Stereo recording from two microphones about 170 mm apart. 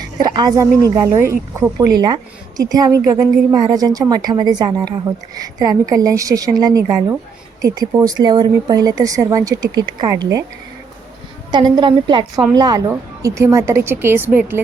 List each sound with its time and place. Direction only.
0.2 s a woman's voice: 25° right (ahead or behind)
2.0 s a woman's voice: 25° right (ahead or behind)
11.5 s a woman's voice: 25° right (ahead or behind)